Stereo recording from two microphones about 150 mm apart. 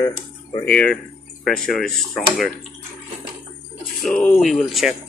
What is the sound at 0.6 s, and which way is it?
Speech, 10° left (ahead or behind).